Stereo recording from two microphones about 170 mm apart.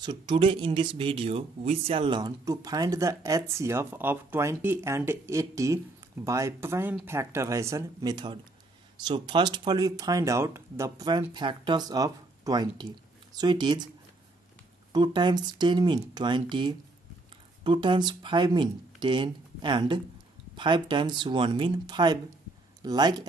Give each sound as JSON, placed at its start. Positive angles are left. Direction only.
{"t": 0.0, "sound": "speech", "side_deg": -25}
{"t": 14.9, "sound": "speech", "side_deg": -25}